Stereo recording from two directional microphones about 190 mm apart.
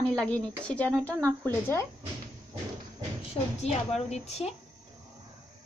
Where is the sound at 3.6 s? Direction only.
35° left (ahead or behind).